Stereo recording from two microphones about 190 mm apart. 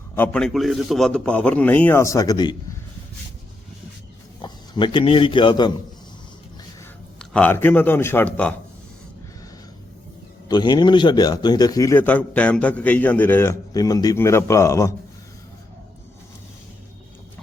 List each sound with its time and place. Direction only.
0.2 s a man's voice: 5° left (ahead or behind)
4.4 s a man's voice: 25° left (ahead or behind)
7.2 s a man's voice: 5° left (ahead or behind)
10.5 s a man's voice: 25° left (ahead or behind)